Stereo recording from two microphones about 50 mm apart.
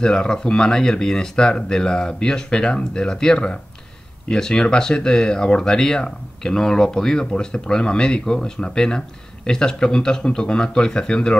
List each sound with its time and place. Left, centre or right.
0.0 s speech: centre